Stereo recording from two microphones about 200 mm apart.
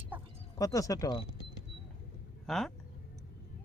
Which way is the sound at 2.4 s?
Centre (ahead or behind).